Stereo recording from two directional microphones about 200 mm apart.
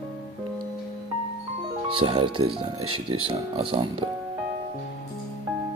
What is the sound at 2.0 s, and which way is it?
Speech, 25° right (ahead or behind).